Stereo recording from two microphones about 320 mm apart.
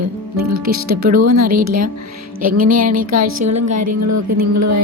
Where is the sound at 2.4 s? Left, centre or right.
Right.